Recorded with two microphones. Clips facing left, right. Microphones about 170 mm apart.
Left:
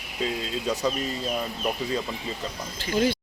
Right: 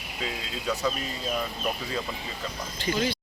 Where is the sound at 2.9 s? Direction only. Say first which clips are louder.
Left 6 dB; 50° left (ahead or behind).